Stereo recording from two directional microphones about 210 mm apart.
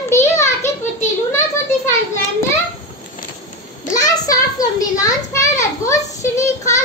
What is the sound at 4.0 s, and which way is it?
A child's voice, 15° left (ahead or behind).